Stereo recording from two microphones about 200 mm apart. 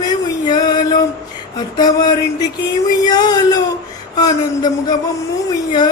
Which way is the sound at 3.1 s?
20° left (ahead or behind).